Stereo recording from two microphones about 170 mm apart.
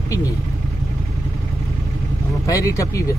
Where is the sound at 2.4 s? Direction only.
20° left (ahead or behind).